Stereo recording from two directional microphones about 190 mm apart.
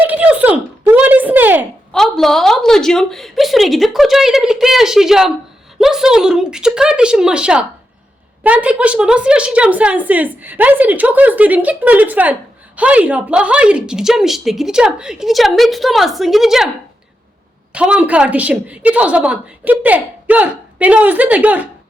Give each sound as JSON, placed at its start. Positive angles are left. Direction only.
{"t": 0.0, "sound": "a sound", "side_deg": -10}
{"t": 1.9, "sound": "a woman's voice", "side_deg": 0}
{"t": 17.7, "sound": "a woman's voice", "side_deg": -5}